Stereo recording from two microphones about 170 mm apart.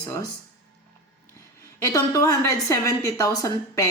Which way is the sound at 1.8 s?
15° left (ahead or behind).